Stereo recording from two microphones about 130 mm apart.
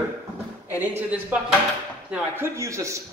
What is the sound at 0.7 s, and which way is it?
A woman's voice, 15° right (ahead or behind).